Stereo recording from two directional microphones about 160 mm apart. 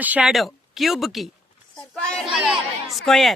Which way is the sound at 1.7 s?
5° left (ahead or behind).